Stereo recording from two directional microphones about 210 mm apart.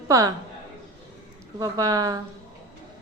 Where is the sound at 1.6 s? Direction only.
15° right (ahead or behind).